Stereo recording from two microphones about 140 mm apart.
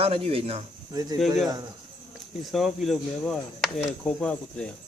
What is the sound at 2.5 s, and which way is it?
Speech, centre (ahead or behind).